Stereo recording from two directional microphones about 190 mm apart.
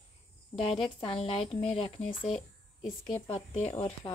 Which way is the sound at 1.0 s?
30° left (ahead or behind).